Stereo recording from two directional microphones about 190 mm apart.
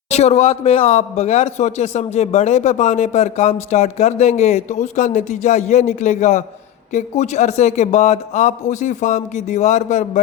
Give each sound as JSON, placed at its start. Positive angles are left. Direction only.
{"t": 0.1, "sound": "a man's voice", "side_deg": 35}